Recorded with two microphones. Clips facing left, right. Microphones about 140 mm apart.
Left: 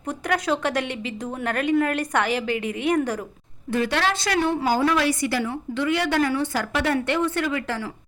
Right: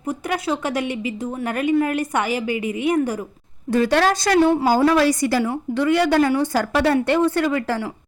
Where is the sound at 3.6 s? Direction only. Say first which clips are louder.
Right 6 dB; 40° right (ahead or behind).